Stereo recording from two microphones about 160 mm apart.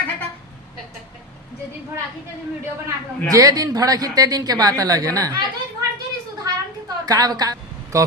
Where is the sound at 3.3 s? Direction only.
20° right (ahead or behind).